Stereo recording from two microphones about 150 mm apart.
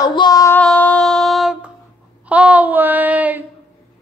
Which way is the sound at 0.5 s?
10° left (ahead or behind).